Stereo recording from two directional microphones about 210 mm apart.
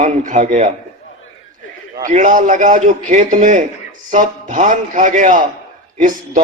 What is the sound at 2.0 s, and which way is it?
A man's voice, 35° right (ahead or behind).